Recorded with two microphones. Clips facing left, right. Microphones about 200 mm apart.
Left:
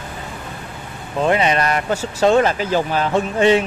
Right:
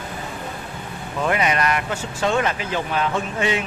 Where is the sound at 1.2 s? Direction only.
30° left (ahead or behind).